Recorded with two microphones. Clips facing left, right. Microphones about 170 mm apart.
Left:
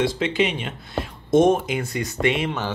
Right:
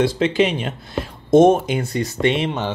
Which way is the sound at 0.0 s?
40° right (ahead or behind).